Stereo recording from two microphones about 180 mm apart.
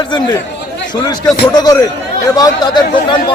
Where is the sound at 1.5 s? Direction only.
20° left (ahead or behind).